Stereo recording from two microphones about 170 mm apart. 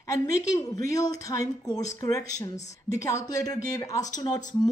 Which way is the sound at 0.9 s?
20° left (ahead or behind).